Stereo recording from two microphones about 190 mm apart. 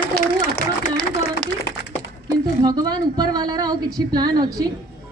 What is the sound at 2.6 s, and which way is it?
A woman's voice, 20° right (ahead or behind).